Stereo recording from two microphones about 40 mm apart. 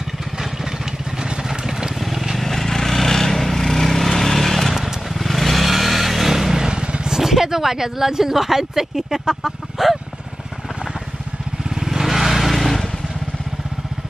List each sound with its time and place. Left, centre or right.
0.4 s vehicle: centre
2.0 s vehicle: centre
6.6 s vehicle: right
7.2 s speech: centre
11.6 s vehicle: centre